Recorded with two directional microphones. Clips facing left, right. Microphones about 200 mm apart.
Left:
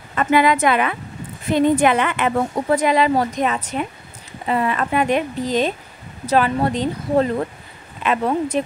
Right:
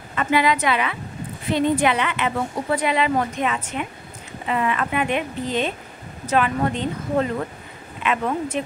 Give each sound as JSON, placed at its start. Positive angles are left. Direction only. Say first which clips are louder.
{"t": 0.1, "sound": "a woman's voice", "louder": "left 4 dB", "side_deg": 50}